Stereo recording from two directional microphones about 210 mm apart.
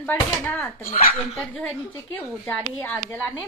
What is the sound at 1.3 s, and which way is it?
A woman's voice, 5° left (ahead or behind).